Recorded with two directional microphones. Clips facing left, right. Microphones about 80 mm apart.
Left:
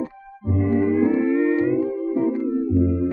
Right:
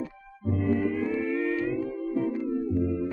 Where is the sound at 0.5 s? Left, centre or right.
Left.